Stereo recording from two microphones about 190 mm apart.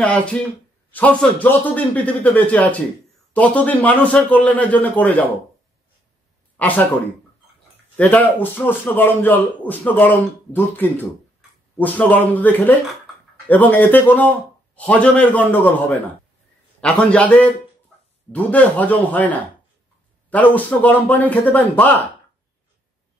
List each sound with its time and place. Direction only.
0.0 s a man's voice: 5° left (ahead or behind)
6.5 s speech: 10° left (ahead or behind)
8.0 s a man's voice: 10° left (ahead or behind)